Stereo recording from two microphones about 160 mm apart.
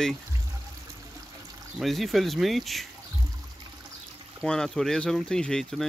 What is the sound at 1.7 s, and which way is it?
Speech, centre (ahead or behind).